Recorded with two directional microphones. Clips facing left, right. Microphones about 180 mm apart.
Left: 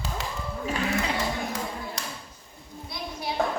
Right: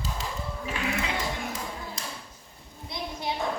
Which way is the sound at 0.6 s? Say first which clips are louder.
Left 4 dB; 40° left (ahead or behind).